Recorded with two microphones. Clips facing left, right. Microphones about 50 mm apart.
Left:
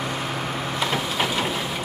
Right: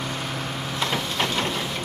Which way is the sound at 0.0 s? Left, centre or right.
Centre.